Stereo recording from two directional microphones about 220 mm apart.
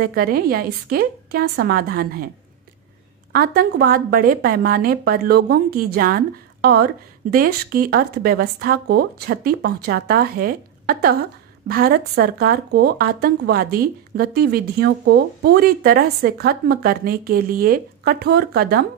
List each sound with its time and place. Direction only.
0.0 s a woman's voice: 45° right (ahead or behind)
3.3 s a woman's voice: 45° right (ahead or behind)